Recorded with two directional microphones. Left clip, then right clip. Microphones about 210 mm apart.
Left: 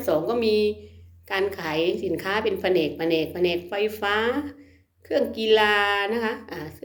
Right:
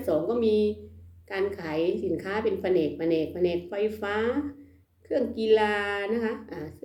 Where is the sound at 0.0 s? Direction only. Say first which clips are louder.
Left 3 dB; 5° right (ahead or behind).